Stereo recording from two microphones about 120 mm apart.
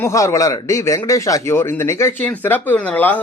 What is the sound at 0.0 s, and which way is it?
A man's voice, 25° left (ahead or behind).